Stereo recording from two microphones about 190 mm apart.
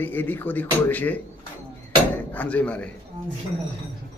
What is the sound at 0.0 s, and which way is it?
Speech, 10° left (ahead or behind).